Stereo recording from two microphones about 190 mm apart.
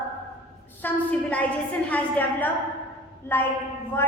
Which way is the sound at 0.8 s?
10° left (ahead or behind).